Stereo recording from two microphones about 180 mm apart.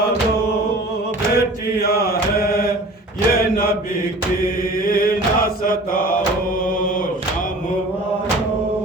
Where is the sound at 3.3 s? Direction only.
55° left (ahead or behind).